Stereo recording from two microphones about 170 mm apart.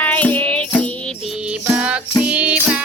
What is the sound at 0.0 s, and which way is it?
Music, 10° left (ahead or behind).